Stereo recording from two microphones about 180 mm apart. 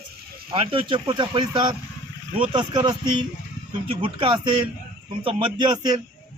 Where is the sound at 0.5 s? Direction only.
30° right (ahead or behind).